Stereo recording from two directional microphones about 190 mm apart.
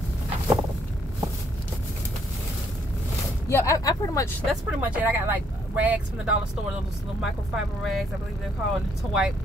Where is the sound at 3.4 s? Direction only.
15° left (ahead or behind).